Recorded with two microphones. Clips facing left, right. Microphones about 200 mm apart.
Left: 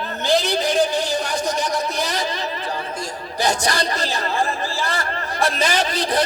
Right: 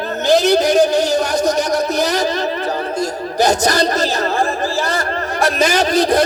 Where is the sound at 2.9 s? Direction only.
45° right (ahead or behind).